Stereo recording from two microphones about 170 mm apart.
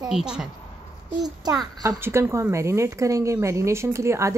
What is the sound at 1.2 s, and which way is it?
A woman's voice, 25° right (ahead or behind).